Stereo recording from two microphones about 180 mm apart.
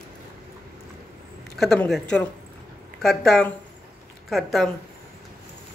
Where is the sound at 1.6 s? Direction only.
Centre (ahead or behind).